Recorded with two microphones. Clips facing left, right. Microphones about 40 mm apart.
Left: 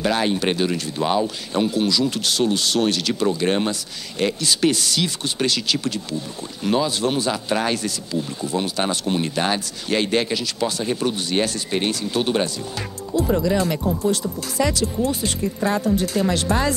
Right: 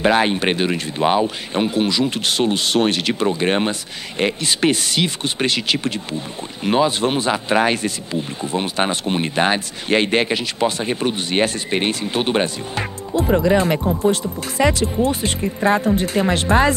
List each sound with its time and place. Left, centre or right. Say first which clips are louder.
0.0 s speech: right 4 dB; right